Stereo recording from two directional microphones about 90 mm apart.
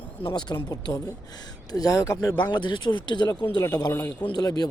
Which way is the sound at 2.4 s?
55° left (ahead or behind).